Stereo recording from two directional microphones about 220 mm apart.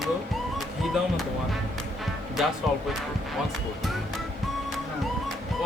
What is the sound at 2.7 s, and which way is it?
Speech, centre (ahead or behind).